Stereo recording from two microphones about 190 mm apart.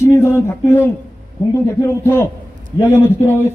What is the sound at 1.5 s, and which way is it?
A man's voice, 15° left (ahead or behind).